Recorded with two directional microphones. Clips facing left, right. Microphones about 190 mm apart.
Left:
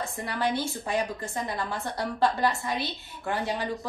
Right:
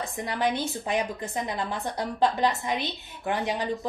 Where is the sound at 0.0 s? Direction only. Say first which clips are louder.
Right 2 dB; 15° right (ahead or behind).